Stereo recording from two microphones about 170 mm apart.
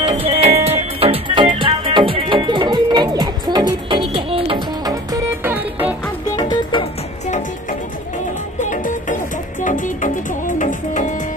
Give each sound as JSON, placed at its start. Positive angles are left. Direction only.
{"t": 0.0, "sound": "music", "side_deg": -35}
{"t": 5.4, "sound": "music", "side_deg": -10}
{"t": 6.2, "sound": "music", "side_deg": 25}
{"t": 8.5, "sound": "music", "side_deg": 45}